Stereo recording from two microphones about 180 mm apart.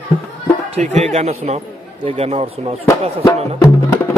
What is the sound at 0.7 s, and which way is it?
A man's voice, 40° right (ahead or behind).